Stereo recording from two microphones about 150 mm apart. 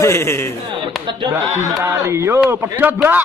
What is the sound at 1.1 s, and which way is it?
A man's voice, 30° right (ahead or behind).